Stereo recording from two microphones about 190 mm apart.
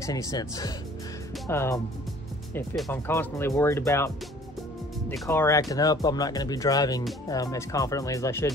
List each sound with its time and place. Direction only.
0.0 s speech: 20° left (ahead or behind)
2.9 s speech: 10° left (ahead or behind)
5.3 s speech: 15° left (ahead or behind)